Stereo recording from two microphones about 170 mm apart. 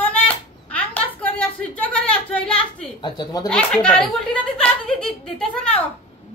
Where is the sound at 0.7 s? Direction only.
10° left (ahead or behind).